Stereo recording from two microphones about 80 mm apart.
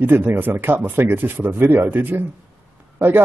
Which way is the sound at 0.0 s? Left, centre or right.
Right.